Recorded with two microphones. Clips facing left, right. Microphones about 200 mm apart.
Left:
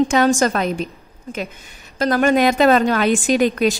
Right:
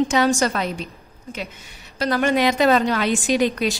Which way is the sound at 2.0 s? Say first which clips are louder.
Left 4 dB; 45° left (ahead or behind).